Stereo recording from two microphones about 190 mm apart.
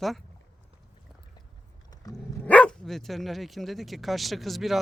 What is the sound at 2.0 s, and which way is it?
Dog, 20° left (ahead or behind).